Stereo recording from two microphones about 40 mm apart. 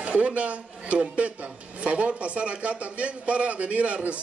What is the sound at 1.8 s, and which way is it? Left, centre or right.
A man's voice, right.